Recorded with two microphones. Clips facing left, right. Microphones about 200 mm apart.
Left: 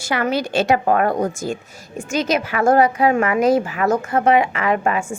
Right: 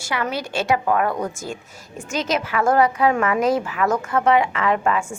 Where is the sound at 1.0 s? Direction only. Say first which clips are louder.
Left 4 dB; 40° left (ahead or behind).